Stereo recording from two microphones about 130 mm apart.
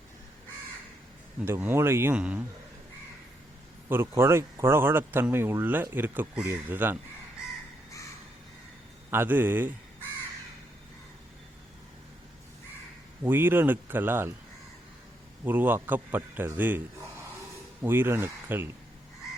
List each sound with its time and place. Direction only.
1.4 s speech: 15° right (ahead or behind)
3.8 s speech: 20° right (ahead or behind)
9.0 s speech: 15° right (ahead or behind)
13.2 s speech: 15° right (ahead or behind)
15.4 s speech: 15° right (ahead or behind)
17.8 s speech: 15° right (ahead or behind)